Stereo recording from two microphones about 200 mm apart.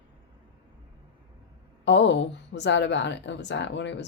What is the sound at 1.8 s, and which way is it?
Speech, 60° left (ahead or behind).